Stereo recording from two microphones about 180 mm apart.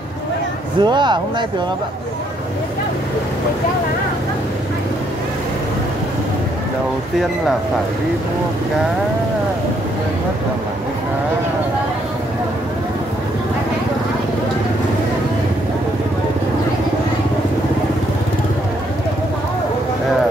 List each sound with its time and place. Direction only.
0.7 s speech: 25° right (ahead or behind)